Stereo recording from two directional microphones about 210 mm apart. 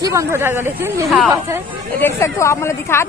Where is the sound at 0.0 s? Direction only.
15° right (ahead or behind).